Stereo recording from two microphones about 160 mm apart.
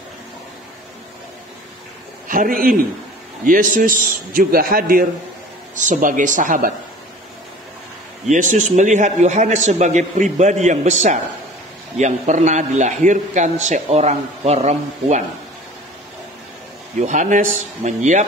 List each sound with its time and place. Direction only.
2.2 s a man's voice: 60° right (ahead or behind)
5.8 s a man's voice: 50° right (ahead or behind)
8.3 s a man's voice: 50° right (ahead or behind)
17.0 s a man's voice: 50° right (ahead or behind)